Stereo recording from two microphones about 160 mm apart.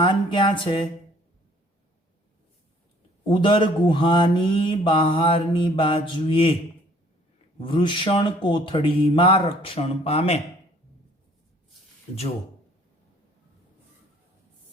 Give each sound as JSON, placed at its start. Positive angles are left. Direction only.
{"t": 0.0, "sound": "speech", "side_deg": 30}
{"t": 3.2, "sound": "speech", "side_deg": 30}
{"t": 7.6, "sound": "speech", "side_deg": 30}